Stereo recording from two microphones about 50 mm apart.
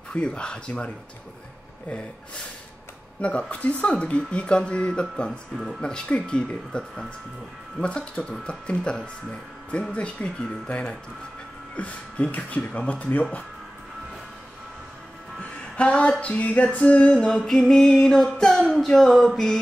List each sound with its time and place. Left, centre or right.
0.1 s speech: centre
3.2 s speech: left
5.8 s music: centre
7.8 s speech: left
15.7 s speech: left
17.4 s music: centre